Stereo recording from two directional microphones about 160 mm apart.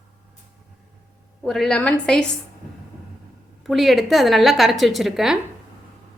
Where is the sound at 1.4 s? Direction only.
5° left (ahead or behind).